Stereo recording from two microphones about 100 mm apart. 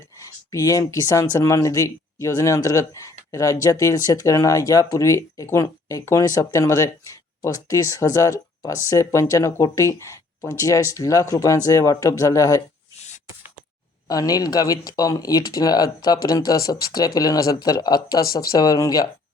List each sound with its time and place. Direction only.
0.5 s speech: 35° left (ahead or behind)
14.1 s speech: 40° left (ahead or behind)